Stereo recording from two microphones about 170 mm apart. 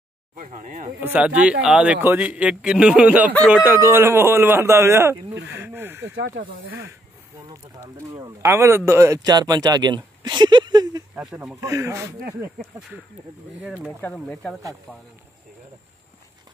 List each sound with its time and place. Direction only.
0.4 s speech: 50° right (ahead or behind)
1.0 s speech: 10° right (ahead or behind)
8.4 s speech: 15° right (ahead or behind)
11.1 s speech: 10° right (ahead or behind)
14.0 s speech: 10° left (ahead or behind)